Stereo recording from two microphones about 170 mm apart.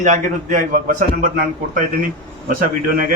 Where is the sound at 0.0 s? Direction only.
50° right (ahead or behind).